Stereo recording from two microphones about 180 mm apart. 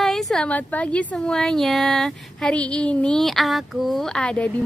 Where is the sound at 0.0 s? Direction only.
Centre (ahead or behind).